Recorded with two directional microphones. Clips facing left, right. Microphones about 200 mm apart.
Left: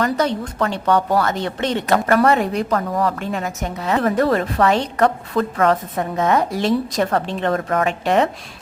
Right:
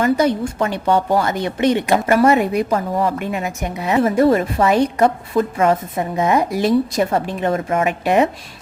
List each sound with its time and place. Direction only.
0.0 s a woman's voice: 10° right (ahead or behind)
2.7 s a woman's voice: 25° right (ahead or behind)
3.1 s a woman's voice: 10° right (ahead or behind)